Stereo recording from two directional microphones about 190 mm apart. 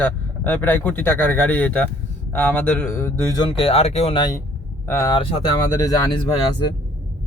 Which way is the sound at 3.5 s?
30° left (ahead or behind).